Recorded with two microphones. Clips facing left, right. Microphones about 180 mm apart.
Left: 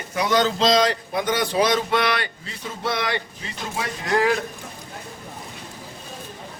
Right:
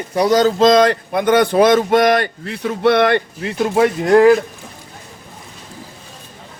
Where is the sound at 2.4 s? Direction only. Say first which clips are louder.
Right 13 dB; 65° right (ahead or behind).